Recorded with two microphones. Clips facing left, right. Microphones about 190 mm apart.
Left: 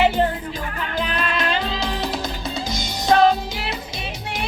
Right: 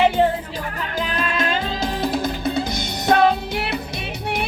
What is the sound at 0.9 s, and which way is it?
Music, 45° right (ahead or behind).